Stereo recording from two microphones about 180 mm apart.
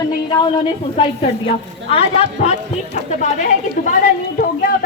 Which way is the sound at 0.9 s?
30° left (ahead or behind).